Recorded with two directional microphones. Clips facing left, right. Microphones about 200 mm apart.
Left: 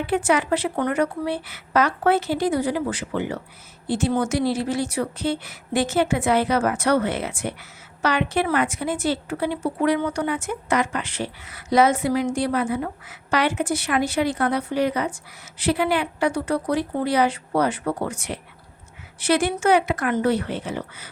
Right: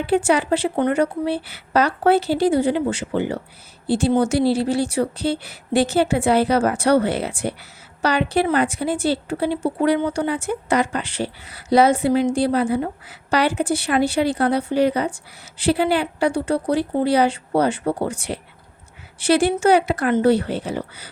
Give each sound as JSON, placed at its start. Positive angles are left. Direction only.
{"t": 0.0, "sound": "a woman's voice", "side_deg": -30}